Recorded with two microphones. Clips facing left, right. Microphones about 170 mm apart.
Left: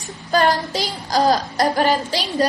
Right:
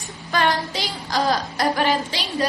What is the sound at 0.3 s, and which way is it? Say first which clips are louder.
Child singing: left 4 dB; 35° left (ahead or behind).